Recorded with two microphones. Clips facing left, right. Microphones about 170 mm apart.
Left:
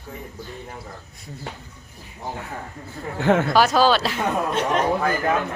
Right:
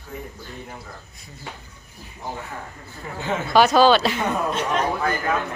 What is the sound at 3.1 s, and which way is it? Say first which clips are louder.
Speech: left 8 dB; 70° left (ahead or behind).